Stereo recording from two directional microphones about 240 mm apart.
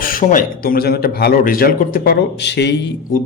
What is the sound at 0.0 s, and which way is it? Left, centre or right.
A man's voice, left.